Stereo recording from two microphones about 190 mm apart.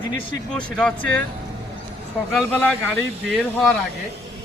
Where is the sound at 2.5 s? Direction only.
10° left (ahead or behind).